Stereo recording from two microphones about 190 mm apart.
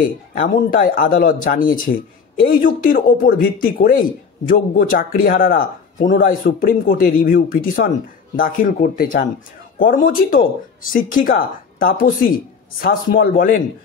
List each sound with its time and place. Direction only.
0.0 s speech: 45° left (ahead or behind)